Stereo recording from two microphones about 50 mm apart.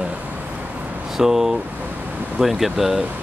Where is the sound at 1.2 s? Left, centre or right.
Centre.